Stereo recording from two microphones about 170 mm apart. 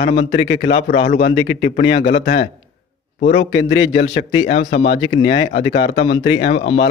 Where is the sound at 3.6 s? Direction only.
90° left.